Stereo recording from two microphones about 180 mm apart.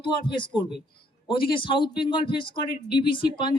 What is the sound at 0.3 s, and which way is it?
Speech, 25° left (ahead or behind).